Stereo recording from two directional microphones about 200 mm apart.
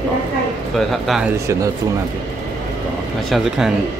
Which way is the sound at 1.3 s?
15° right (ahead or behind).